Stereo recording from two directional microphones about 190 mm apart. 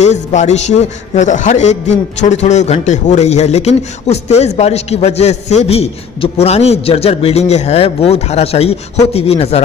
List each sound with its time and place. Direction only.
0.0 s a man's voice: 40° left (ahead or behind)